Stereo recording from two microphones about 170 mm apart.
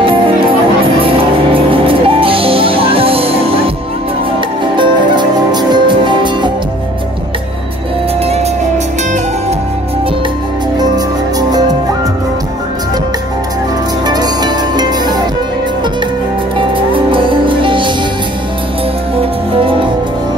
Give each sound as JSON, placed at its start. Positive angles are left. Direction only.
{"t": 0.0, "sound": "music", "side_deg": -30}
{"t": 4.7, "sound": "music", "side_deg": -25}
{"t": 11.3, "sound": "music", "side_deg": -25}
{"t": 14.0, "sound": "music", "side_deg": -25}
{"t": 16.5, "sound": "music", "side_deg": -30}